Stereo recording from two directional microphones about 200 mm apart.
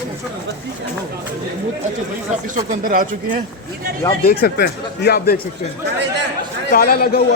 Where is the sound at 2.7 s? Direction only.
45° right (ahead or behind).